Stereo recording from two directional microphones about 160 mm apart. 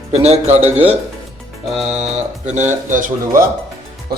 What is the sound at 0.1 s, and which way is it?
Speech, 40° right (ahead or behind).